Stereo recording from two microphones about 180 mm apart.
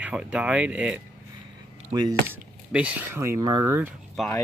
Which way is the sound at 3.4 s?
20° right (ahead or behind).